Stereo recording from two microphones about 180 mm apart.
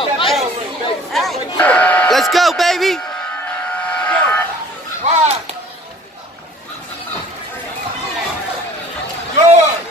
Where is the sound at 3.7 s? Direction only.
5° left (ahead or behind).